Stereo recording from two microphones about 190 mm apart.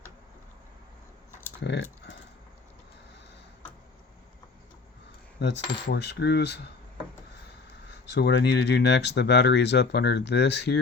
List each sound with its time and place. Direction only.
1.6 s speech: 65° left (ahead or behind)
5.4 s speech: 65° left (ahead or behind)
8.1 s speech: 60° left (ahead or behind)